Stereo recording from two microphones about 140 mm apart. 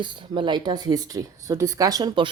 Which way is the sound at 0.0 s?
35° right (ahead or behind).